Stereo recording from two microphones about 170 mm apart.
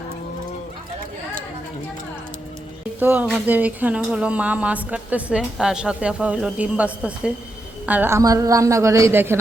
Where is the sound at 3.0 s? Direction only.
10° right (ahead or behind).